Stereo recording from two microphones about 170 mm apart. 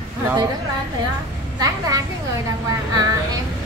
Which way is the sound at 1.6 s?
20° right (ahead or behind).